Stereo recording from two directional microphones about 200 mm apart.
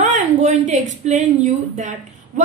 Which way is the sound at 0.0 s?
35° right (ahead or behind).